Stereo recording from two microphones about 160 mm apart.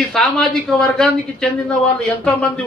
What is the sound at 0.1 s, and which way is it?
Speech, centre (ahead or behind).